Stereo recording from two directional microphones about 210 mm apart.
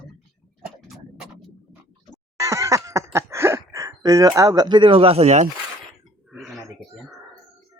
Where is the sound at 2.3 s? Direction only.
15° right (ahead or behind); by 5.5 s 35° right (ahead or behind).